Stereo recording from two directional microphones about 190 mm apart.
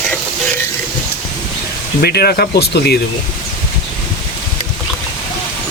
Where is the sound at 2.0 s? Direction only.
55° left (ahead or behind).